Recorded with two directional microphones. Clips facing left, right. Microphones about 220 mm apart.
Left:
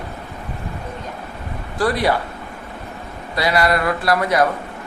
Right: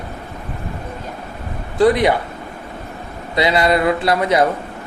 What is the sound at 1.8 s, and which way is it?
Speech, 20° right (ahead or behind).